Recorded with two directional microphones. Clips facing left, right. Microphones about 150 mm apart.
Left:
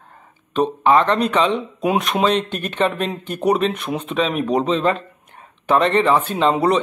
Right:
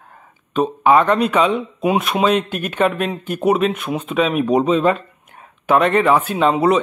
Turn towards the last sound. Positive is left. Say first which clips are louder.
# right 2 dB
turn(degrees=-5)  # may be behind; listen again after turning